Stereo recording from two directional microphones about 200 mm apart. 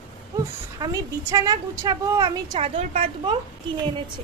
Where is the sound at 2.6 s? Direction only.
30° right (ahead or behind).